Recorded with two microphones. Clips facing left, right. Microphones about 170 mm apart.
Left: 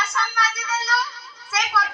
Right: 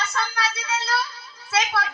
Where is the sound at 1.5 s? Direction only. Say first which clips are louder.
Right 1 dB; 30° right (ahead or behind).